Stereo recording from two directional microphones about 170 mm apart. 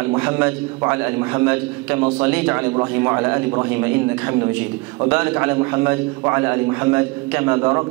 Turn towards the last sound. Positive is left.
turn(degrees=-15)  # may be behind; listen again after turning